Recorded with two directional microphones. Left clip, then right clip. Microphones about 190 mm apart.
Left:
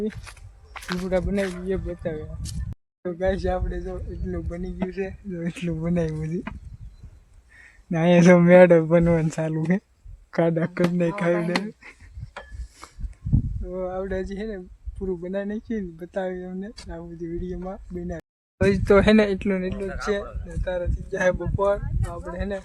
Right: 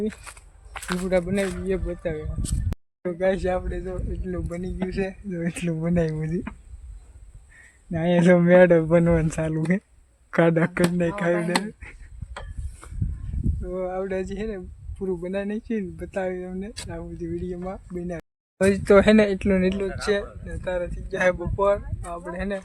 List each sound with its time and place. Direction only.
0.1 s a sound: 25° right (ahead or behind)
1.4 s speech: 20° right (ahead or behind)
1.6 s speech: 10° right (ahead or behind)
4.9 s speech: 50° right (ahead or behind)
5.3 s speech: 10° right (ahead or behind)
7.9 s speech: 20° left (ahead or behind); by 9.8 s centre (ahead or behind)
10.3 s speech: 10° right (ahead or behind)
10.9 s speech: 5° left (ahead or behind)
13.6 s speech: 15° right (ahead or behind)
18.2 s speech: centre (ahead or behind)
20.0 s speech: 20° right (ahead or behind)